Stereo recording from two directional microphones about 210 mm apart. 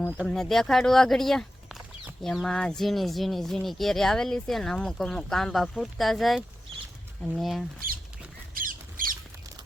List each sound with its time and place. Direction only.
0.2 s speech: centre (ahead or behind)
8.5 s squawk: 40° right (ahead or behind)